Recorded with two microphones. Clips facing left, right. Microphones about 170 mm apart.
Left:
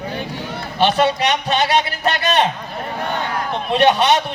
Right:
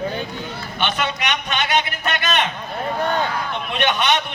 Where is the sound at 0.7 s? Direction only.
35° left (ahead or behind).